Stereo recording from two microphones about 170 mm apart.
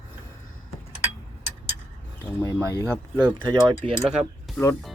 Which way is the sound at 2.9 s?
10° right (ahead or behind).